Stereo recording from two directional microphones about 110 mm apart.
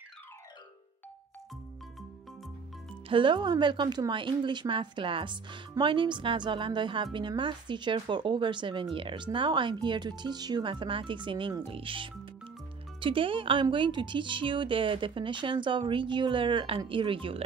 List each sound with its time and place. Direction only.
3.1 s speech: 50° right (ahead or behind)